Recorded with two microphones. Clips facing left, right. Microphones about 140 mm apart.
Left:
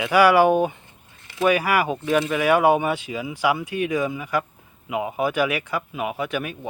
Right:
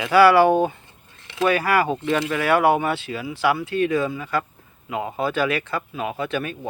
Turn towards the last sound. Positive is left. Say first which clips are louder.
# right 1 dB
turn(degrees=10)  # may be behind; listen again after turning